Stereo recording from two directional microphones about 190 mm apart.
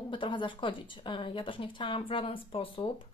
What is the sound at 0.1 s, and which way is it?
Speech, 25° left (ahead or behind).